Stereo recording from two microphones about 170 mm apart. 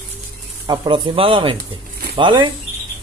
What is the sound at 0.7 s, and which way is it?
Speech, 30° right (ahead or behind).